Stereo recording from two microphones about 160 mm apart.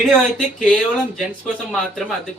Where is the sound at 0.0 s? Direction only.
Centre (ahead or behind).